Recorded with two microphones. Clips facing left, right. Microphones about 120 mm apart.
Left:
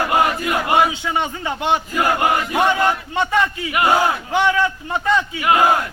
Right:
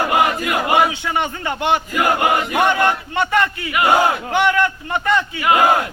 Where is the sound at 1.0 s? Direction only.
10° left (ahead or behind).